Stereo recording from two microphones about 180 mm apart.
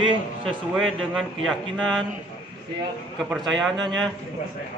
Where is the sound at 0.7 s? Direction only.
Centre (ahead or behind).